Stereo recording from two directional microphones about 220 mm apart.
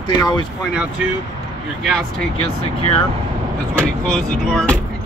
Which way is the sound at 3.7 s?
5° left (ahead or behind).